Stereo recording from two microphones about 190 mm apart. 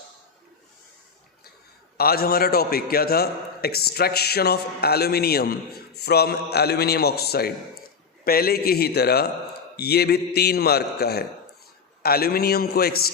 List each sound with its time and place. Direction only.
2.0 s a man's voice: 55° left (ahead or behind)